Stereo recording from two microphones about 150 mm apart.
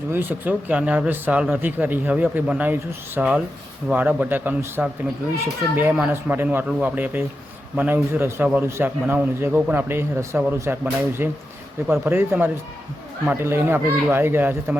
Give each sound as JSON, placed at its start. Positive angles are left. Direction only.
{"t": 0.1, "sound": "speech", "side_deg": -15}